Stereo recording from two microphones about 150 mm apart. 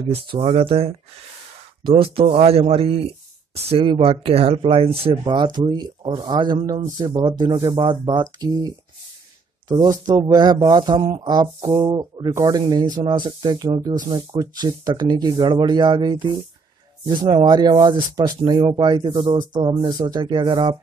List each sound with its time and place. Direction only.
0.1 s speech: 40° right (ahead or behind); by 8.6 s 25° right (ahead or behind)
9.7 s speech: 25° right (ahead or behind)